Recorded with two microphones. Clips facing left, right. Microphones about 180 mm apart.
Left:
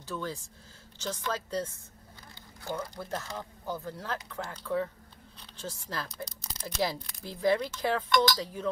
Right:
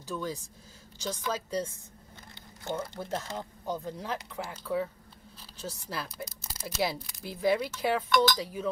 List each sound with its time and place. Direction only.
0.0 s speech: 10° right (ahead or behind)
2.6 s speech: 25° right (ahead or behind); by 8.6 s 5° right (ahead or behind)